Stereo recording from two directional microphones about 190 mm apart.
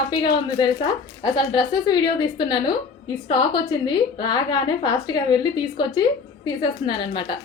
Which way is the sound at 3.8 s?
20° left (ahead or behind).